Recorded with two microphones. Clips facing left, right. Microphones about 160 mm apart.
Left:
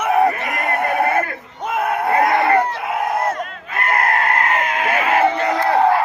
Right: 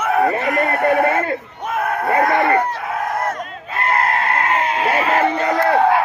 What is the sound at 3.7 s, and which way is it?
Chicken, 30° right (ahead or behind).